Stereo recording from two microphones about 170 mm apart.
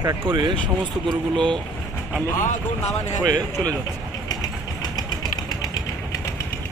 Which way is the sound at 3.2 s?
25° right (ahead or behind).